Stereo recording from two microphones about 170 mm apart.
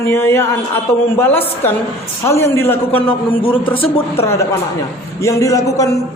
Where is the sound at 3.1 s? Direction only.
30° left (ahead or behind).